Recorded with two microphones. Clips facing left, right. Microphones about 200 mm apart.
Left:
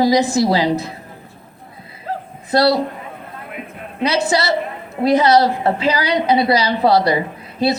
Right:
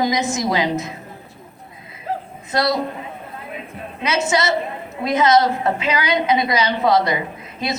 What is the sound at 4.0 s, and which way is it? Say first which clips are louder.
A woman's voice: left 3 dB; 35° left (ahead or behind).